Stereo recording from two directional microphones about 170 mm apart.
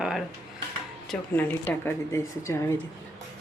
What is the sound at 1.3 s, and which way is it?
A woman's voice, 10° left (ahead or behind).